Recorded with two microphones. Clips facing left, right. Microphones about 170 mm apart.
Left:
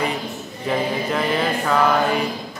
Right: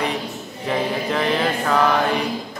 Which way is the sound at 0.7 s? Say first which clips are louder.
Even; centre (ahead or behind).